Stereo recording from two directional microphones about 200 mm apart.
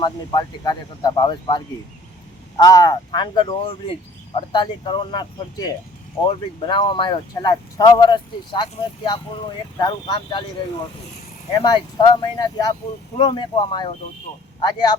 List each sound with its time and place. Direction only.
0.0 s speech: 20° left (ahead or behind)
9.7 s speech: 20° left (ahead or behind)
11.6 s speech: 20° left (ahead or behind)